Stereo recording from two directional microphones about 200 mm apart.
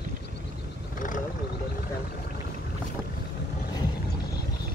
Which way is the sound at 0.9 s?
40° left (ahead or behind).